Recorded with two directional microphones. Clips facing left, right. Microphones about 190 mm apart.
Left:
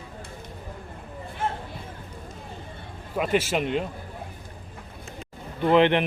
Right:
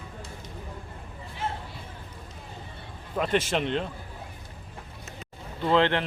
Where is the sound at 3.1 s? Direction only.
5° left (ahead or behind).